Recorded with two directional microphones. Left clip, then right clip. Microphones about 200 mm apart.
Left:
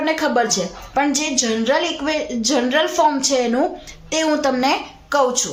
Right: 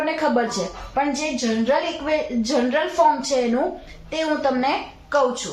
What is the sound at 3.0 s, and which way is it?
A woman's voice, 50° left (ahead or behind).